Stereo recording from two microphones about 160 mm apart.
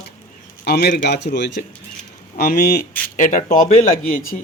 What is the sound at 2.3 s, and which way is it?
Speech, 70° left (ahead or behind).